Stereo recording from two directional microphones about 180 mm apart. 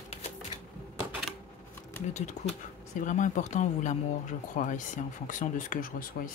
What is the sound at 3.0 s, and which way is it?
Speech, 45° left (ahead or behind).